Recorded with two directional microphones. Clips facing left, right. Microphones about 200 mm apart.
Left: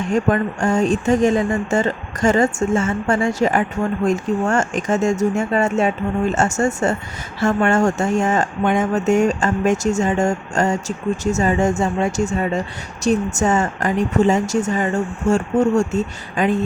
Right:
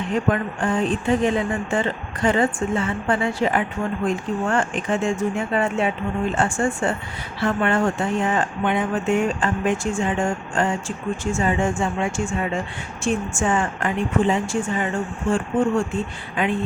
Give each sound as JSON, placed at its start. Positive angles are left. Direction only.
{"t": 0.1, "sound": "speech", "side_deg": 45}